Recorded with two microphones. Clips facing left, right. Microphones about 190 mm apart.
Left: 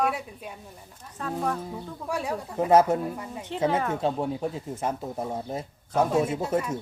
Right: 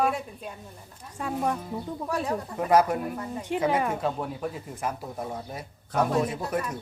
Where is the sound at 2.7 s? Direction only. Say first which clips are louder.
Left 2 dB; 25° left (ahead or behind).